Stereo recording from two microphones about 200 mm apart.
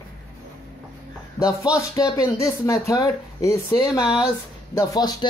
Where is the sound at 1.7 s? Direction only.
15° left (ahead or behind).